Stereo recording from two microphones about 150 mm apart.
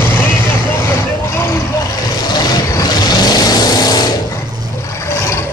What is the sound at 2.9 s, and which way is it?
Vehicle, 25° left (ahead or behind).